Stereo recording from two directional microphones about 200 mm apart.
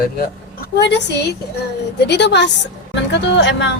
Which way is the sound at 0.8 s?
60° left (ahead or behind).